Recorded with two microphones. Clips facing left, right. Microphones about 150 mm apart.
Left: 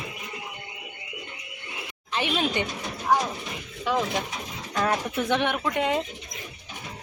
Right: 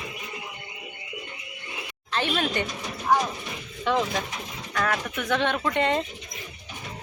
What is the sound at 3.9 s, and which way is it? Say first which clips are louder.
Speech: right 1 dB; 10° left (ahead or behind).